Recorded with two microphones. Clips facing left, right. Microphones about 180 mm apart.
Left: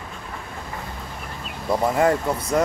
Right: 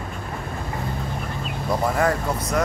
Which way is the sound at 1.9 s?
25° left (ahead or behind).